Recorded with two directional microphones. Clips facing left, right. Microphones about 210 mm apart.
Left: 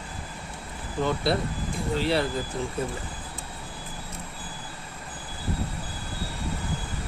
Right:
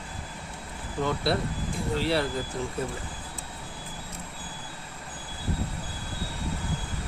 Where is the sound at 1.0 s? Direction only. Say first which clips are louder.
Left 2 dB; 20° left (ahead or behind).